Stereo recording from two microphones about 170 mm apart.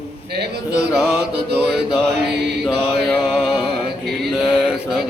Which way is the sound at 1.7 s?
75° right (ahead or behind).